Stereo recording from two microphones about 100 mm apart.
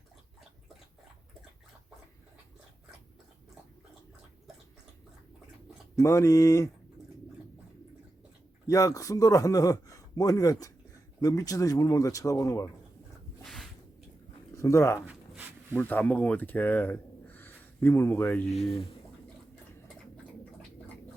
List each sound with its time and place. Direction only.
6.0 s a man's voice: 30° left (ahead or behind)
8.6 s a man's voice: 35° left (ahead or behind)
13.4 s a sound: 5° left (ahead or behind)
14.5 s speech: 30° left (ahead or behind)
15.7 s speech: 15° left (ahead or behind)